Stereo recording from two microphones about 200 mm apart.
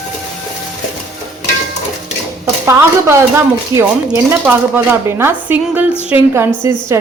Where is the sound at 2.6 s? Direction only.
10° right (ahead or behind).